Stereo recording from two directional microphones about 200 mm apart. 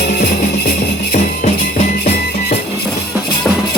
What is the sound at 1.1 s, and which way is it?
Music, 35° left (ahead or behind).